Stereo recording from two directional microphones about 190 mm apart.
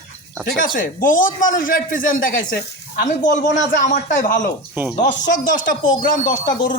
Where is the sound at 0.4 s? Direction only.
50° left (ahead or behind).